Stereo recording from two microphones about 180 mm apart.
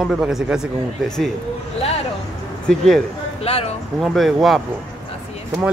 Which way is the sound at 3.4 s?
35° left (ahead or behind).